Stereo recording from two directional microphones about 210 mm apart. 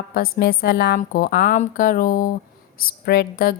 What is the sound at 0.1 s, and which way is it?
A woman's voice, 45° left (ahead or behind).